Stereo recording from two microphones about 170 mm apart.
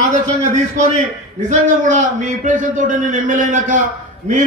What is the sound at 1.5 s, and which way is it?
A man's voice, 45° right (ahead or behind).